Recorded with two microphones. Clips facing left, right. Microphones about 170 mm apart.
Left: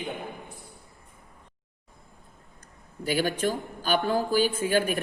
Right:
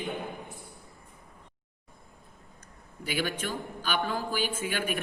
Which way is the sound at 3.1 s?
40° left (ahead or behind).